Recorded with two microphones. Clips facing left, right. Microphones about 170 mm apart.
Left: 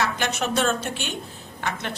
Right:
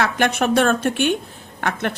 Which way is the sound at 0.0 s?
55° right (ahead or behind).